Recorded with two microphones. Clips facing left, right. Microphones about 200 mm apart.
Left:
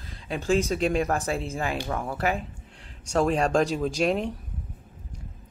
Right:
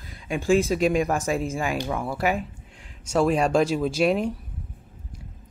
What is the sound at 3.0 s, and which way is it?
Speech, 40° left (ahead or behind).